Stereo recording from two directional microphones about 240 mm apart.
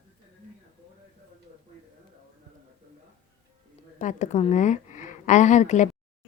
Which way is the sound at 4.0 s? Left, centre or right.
Left.